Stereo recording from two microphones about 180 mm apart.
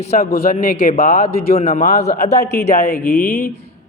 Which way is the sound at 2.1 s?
60° left (ahead or behind).